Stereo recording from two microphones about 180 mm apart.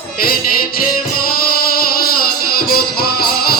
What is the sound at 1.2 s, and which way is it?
Music, 55° left (ahead or behind).